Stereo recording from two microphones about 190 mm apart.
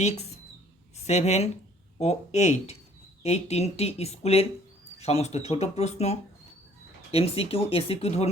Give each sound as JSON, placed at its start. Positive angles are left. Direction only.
{"t": 0.9, "sound": "speech", "side_deg": 35}